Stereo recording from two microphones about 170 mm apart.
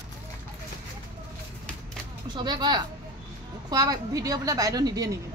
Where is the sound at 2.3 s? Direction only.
25° right (ahead or behind).